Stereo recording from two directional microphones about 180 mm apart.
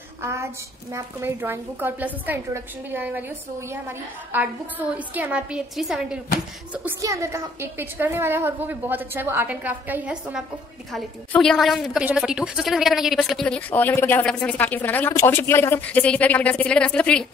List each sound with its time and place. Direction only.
0.2 s a woman's voice: 15° right (ahead or behind)
6.7 s a woman's voice: 15° right (ahead or behind)
10.9 s speech: centre (ahead or behind)